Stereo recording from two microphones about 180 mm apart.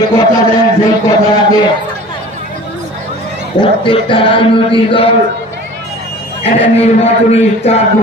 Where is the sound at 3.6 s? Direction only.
30° left (ahead or behind).